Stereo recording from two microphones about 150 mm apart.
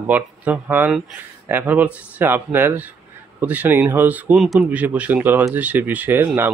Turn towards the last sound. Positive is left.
turn(degrees=-15)  # may be behind; listen again after turning